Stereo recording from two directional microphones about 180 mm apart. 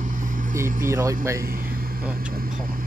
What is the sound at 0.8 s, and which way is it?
Speech, 15° right (ahead or behind).